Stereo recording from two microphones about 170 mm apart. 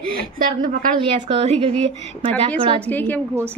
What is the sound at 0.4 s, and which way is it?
Speech, 55° right (ahead or behind).